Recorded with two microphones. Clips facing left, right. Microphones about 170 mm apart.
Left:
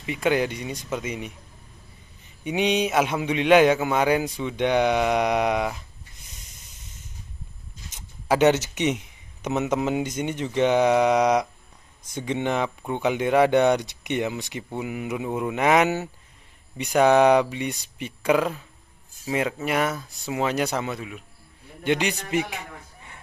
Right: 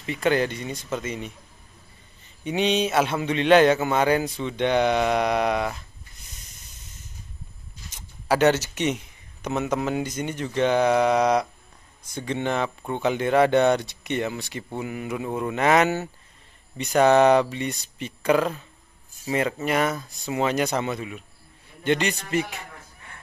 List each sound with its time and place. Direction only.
0.0 s a man's voice: 10° left (ahead or behind)
2.4 s a man's voice: 10° left (ahead or behind)
8.4 s a man's voice: 15° left (ahead or behind); by 21.2 s centre (ahead or behind)
21.8 s a man's voice: 10° left (ahead or behind)